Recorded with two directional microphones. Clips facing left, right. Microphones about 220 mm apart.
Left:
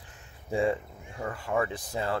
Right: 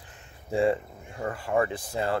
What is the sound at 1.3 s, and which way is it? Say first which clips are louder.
Speech: right 3 dB; 40° right (ahead or behind).